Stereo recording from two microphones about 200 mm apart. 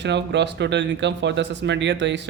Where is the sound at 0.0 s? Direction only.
60° right (ahead or behind).